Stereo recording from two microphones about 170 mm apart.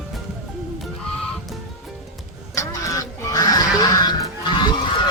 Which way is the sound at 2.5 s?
20° left (ahead or behind).